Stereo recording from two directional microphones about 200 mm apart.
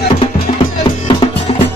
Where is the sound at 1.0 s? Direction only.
30° left (ahead or behind).